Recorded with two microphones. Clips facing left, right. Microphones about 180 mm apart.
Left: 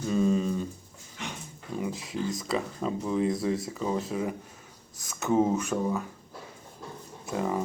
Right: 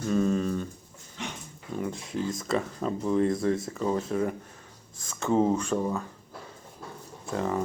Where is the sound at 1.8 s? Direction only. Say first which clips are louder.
Even; 5° left (ahead or behind).